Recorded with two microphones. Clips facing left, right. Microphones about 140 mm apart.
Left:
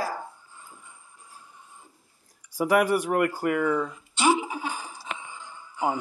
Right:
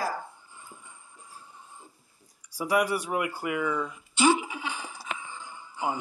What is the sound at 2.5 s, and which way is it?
Speech, 55° left (ahead or behind).